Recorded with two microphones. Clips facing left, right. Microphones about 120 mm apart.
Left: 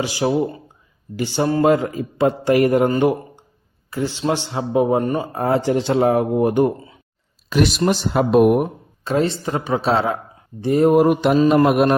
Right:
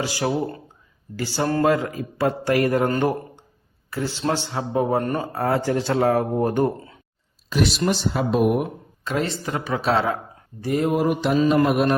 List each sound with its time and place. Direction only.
0.3 s a man's voice: 10° left (ahead or behind)
7.9 s speech: 55° left (ahead or behind)
9.0 s a man's voice: 30° left (ahead or behind)
10.8 s mantra: 50° left (ahead or behind)
11.4 s speech: 55° left (ahead or behind)